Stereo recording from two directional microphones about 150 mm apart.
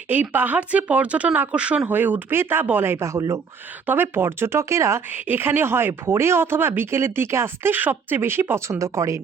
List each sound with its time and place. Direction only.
0.1 s speech: 10° right (ahead or behind)